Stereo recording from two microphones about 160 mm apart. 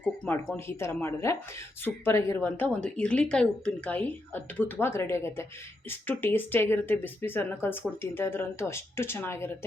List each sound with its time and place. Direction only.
0.0 s a woman's voice: 10° left (ahead or behind)